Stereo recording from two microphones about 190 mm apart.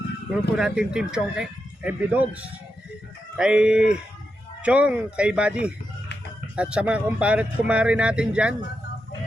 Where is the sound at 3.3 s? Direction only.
5° right (ahead or behind).